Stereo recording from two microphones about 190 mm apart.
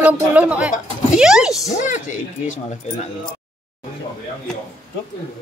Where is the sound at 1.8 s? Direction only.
40° left (ahead or behind).